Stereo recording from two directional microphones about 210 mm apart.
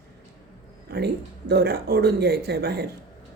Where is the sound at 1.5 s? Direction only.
50° right (ahead or behind).